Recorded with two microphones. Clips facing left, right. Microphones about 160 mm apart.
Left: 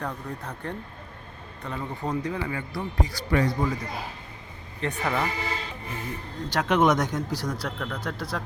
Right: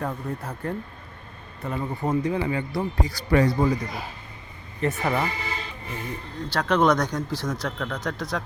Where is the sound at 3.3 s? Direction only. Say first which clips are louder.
Right 4 dB; 35° right (ahead or behind).